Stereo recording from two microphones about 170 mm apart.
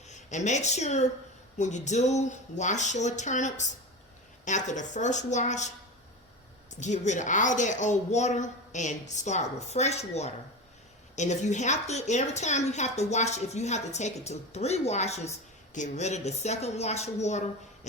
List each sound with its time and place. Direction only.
0.1 s a woman's voice: 45° left (ahead or behind)